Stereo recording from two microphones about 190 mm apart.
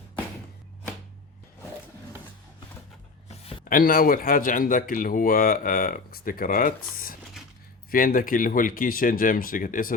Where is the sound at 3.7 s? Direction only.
50° left (ahead or behind).